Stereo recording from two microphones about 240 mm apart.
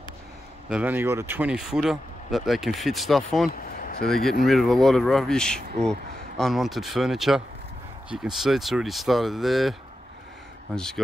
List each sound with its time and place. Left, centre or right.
0.7 s speech: centre
3.8 s a sound: left
4.1 s speech: centre